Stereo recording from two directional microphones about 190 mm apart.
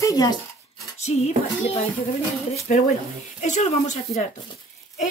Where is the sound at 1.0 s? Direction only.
35° left (ahead or behind).